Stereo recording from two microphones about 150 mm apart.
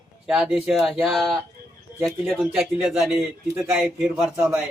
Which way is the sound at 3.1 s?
15° right (ahead or behind).